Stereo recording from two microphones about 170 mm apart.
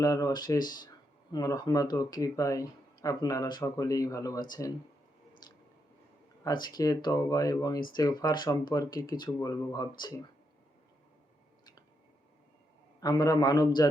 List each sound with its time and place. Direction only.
0.0 s speech: 20° left (ahead or behind)
5.4 s a sound: 25° left (ahead or behind)
6.4 s speech: 25° left (ahead or behind)
13.0 s speech: 20° left (ahead or behind)